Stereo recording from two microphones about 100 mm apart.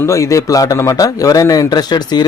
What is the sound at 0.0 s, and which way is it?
A man's voice, 30° left (ahead or behind).